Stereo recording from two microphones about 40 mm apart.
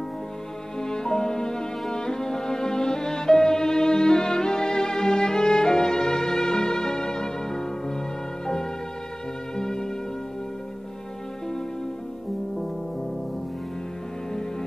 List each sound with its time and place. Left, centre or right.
0.7 s music: centre
9.6 s music: centre